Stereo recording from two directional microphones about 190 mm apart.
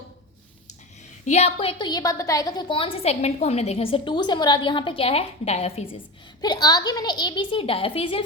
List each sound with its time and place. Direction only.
1.2 s a woman's voice: 35° left (ahead or behind)
6.4 s a woman's voice: 20° left (ahead or behind)